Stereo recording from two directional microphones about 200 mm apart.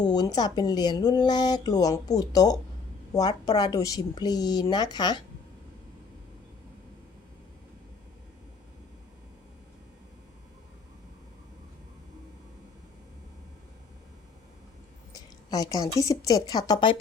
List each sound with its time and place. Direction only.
0.1 s speech: 20° left (ahead or behind)
15.4 s speech: 20° left (ahead or behind)